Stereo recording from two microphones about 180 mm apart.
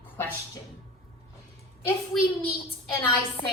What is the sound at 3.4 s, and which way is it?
Speech, 50° left (ahead or behind).